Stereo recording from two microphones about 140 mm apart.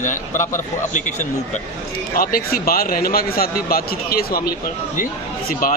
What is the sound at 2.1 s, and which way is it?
A man's voice, 90° left.